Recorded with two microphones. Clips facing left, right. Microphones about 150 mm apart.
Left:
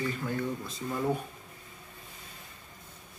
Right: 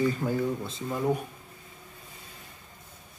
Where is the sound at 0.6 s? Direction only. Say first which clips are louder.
Right 2 dB; 25° right (ahead or behind).